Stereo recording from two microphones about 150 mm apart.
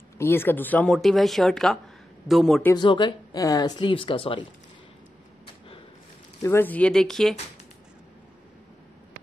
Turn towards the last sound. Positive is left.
turn(degrees=5)  # may be behind; listen again after turning